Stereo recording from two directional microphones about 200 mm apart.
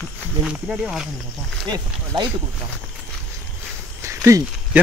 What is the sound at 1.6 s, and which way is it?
Speech, 20° right (ahead or behind).